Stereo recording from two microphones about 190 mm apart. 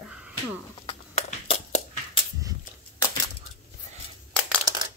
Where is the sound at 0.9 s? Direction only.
35° left (ahead or behind).